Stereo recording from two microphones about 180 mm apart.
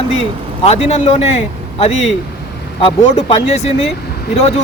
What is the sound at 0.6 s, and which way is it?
Speech, 35° left (ahead or behind).